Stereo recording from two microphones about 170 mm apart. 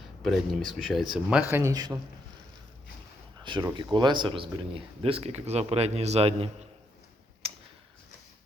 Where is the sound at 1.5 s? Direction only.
20° right (ahead or behind).